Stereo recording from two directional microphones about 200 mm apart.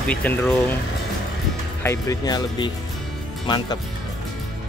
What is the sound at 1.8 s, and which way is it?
Speech, 20° left (ahead or behind).